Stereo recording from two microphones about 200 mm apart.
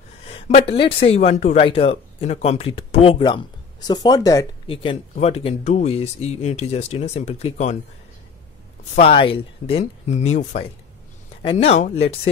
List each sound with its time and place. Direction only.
0.3 s speech: 30° left (ahead or behind)
5.1 s speech: 30° left (ahead or behind)
9.0 s speech: 25° left (ahead or behind)